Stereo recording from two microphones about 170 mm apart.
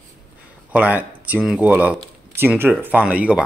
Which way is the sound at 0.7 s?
10° right (ahead or behind).